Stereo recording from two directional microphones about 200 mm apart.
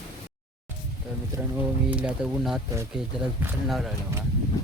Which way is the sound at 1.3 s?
15° right (ahead or behind).